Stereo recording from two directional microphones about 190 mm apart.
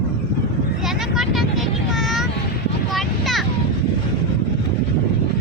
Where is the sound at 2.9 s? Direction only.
Centre (ahead or behind).